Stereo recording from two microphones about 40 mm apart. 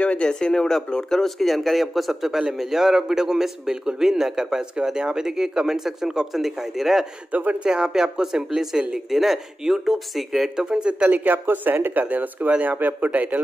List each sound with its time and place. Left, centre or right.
0.0 s speech: left
1.2 s a man's voice: centre
7.6 s a man's voice: right; by 10.5 s centre
10.5 s speech: centre
11.1 s speech: right